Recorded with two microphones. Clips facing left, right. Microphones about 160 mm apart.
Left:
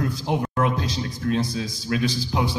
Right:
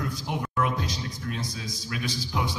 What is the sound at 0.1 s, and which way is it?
A man's voice, 30° left (ahead or behind).